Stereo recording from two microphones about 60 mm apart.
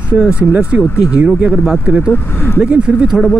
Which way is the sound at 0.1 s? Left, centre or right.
Right.